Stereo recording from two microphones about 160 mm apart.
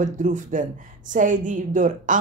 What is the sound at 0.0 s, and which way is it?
A woman's voice, 50° right (ahead or behind).